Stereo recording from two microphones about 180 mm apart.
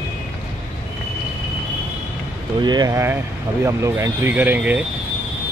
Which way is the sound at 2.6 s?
25° right (ahead or behind).